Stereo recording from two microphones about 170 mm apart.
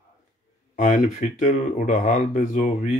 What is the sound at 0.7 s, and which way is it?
Speech, 50° left (ahead or behind).